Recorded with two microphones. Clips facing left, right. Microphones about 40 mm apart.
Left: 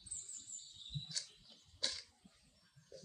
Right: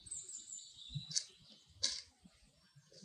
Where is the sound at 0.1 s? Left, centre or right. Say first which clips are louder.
Even; left.